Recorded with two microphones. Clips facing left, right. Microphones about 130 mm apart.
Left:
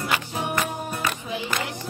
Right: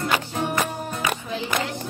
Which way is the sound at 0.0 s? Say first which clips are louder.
Right 3 dB; 15° left (ahead or behind).